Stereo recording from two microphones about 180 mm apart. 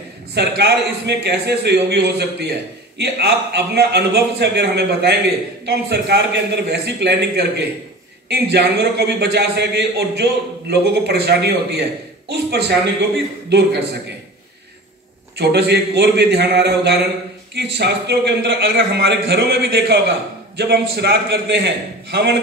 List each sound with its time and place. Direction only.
0.3 s a man's voice: 65° right (ahead or behind)
15.3 s a man's voice: 65° right (ahead or behind)